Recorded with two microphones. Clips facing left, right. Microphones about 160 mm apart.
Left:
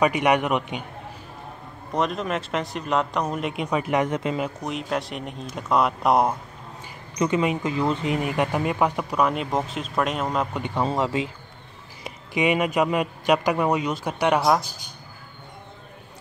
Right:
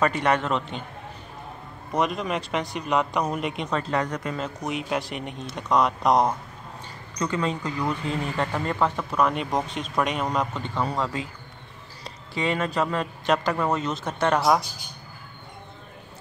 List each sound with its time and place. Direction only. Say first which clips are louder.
0.0 s speech: left 3 dB; 15° left (ahead or behind)
1.9 s speech: even; centre (ahead or behind); by 4.4 s 20° left (ahead or behind)
4.6 s speech: even; centre (ahead or behind)
7.2 s speech: left 4 dB; 20° left (ahead or behind); by 10.5 s 5° left (ahead or behind)
10.5 s speech: left 3 dB; 15° left (ahead or behind)